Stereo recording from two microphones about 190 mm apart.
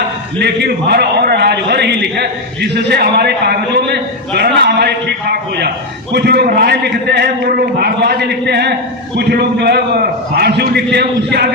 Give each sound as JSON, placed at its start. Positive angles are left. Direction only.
{"t": 0.3, "sound": "a man's voice", "side_deg": -60}